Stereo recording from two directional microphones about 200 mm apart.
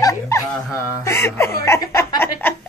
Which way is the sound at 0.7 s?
15° left (ahead or behind).